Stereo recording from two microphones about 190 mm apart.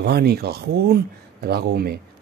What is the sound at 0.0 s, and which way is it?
Speech, 55° right (ahead or behind).